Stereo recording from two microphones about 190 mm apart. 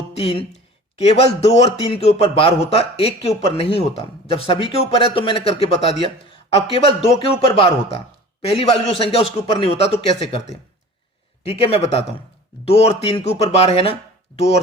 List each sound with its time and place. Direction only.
0.2 s a man's voice: 30° left (ahead or behind)